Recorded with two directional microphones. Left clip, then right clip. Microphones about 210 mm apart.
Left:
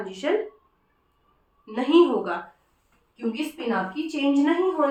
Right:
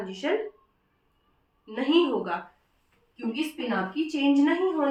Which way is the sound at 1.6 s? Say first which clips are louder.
Left 5 dB; 20° left (ahead or behind).